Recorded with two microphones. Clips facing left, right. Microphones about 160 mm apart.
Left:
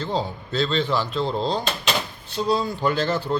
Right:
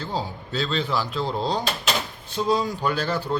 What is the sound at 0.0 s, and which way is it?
Speech, 10° right (ahead or behind).